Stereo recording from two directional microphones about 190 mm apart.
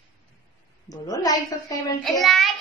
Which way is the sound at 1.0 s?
20° left (ahead or behind).